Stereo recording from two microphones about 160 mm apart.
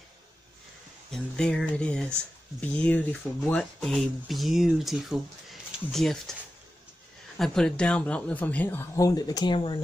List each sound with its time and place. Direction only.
1.1 s speech: 5° left (ahead or behind)
7.3 s speech: 5° left (ahead or behind); by 9.8 s 30° left (ahead or behind)